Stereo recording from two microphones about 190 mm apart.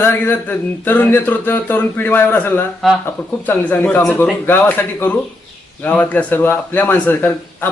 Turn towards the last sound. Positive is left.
turn(degrees=10)  # may be behind; listen again after turning